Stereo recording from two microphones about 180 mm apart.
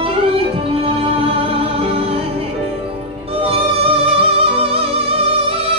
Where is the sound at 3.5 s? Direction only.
30° right (ahead or behind).